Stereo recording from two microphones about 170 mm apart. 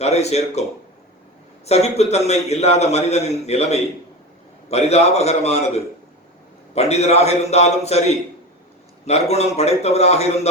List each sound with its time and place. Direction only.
0.0 s a man's voice: 40° left (ahead or behind)
1.6 s a man's voice: 40° left (ahead or behind)
9.3 s a man's voice: 40° left (ahead or behind)